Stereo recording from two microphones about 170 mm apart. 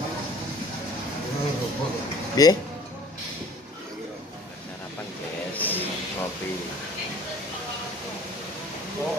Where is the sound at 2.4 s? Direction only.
20° left (ahead or behind).